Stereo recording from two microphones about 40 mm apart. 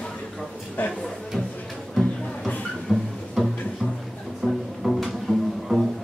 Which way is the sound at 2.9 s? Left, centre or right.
Centre.